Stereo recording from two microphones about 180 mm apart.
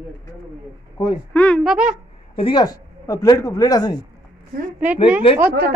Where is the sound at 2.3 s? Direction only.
25° left (ahead or behind).